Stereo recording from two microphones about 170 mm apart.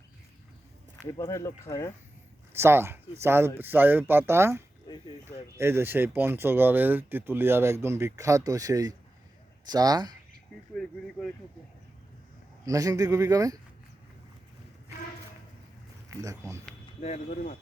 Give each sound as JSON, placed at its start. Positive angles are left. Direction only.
{"t": 1.1, "sound": "speech", "side_deg": 15}
{"t": 2.5, "sound": "a man's voice", "side_deg": -15}
{"t": 10.8, "sound": "speech", "side_deg": 5}
{"t": 12.6, "sound": "a man's voice", "side_deg": -20}
{"t": 16.0, "sound": "speech", "side_deg": -20}
{"t": 17.0, "sound": "speech", "side_deg": 45}